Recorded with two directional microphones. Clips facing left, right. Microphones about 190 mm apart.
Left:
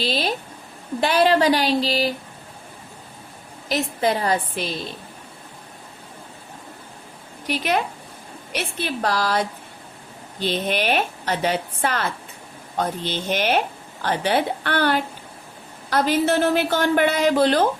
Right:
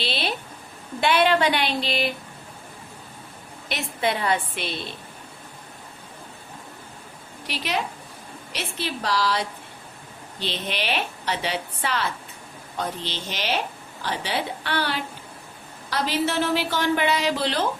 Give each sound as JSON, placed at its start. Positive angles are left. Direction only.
{"t": 0.0, "sound": "a woman's voice", "side_deg": 40}
{"t": 3.7, "sound": "a woman's voice", "side_deg": 40}
{"t": 7.4, "sound": "a woman's voice", "side_deg": 50}